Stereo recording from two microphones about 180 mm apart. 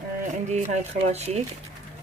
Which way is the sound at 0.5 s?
40° right (ahead or behind).